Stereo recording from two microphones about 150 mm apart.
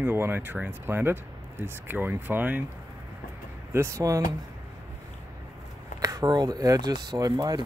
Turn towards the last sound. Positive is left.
turn(degrees=-25)  # may be behind; listen again after turning